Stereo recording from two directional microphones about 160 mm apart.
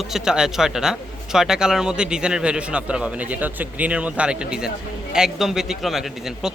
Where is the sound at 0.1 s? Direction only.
5° right (ahead or behind).